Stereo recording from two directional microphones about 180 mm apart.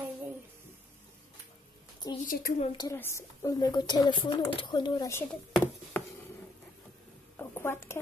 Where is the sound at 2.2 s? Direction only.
45° left (ahead or behind).